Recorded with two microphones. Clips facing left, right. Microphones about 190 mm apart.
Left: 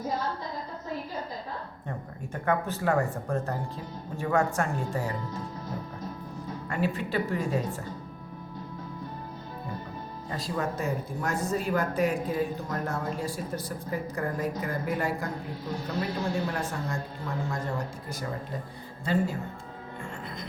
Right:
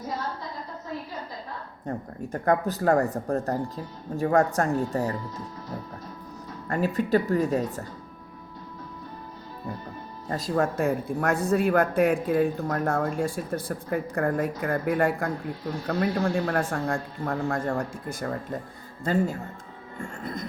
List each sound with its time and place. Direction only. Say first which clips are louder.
1.9 s speech: right 7 dB; 40° right (ahead or behind)
6.7 s speech: right 6 dB; 40° right (ahead or behind)
10.2 s speech: right 6 dB; 45° right (ahead or behind)